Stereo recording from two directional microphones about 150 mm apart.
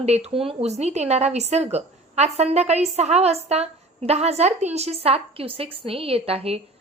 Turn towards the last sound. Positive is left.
turn(degrees=-40)  # may be behind; listen again after turning